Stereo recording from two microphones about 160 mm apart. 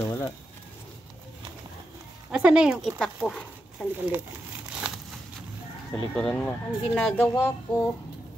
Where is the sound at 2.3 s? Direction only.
5° right (ahead or behind).